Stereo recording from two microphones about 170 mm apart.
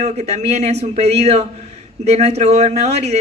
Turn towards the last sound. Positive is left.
turn(degrees=-40)  # may be behind; listen again after turning